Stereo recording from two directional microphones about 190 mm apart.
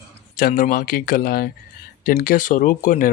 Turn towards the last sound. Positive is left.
turn(degrees=45)  # may be behind; listen again after turning